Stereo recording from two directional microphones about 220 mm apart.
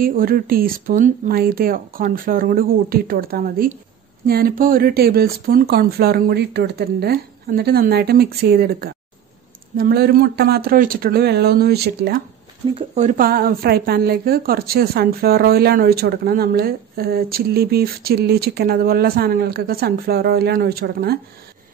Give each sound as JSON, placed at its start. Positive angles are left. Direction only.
{"t": 0.0, "sound": "speech", "side_deg": -40}
{"t": 12.7, "sound": "speech", "side_deg": -30}